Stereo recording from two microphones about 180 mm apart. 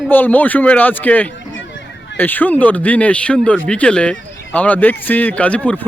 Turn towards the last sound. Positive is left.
turn(degrees=5)  # may be behind; listen again after turning